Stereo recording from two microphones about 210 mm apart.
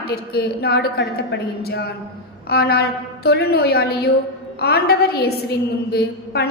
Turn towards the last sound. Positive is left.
turn(degrees=50)  # may be behind; listen again after turning